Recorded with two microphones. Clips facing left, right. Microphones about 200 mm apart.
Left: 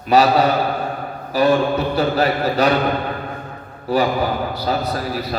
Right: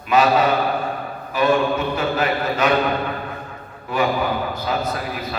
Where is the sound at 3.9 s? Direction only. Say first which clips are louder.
Left 3 dB; 35° left (ahead or behind).